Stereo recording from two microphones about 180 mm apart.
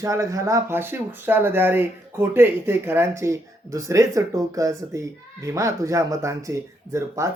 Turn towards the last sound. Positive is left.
turn(degrees=-15)  # may be behind; listen again after turning